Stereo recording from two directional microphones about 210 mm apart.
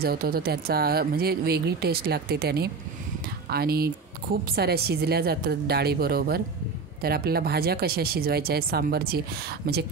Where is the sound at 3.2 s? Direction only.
45° right (ahead or behind).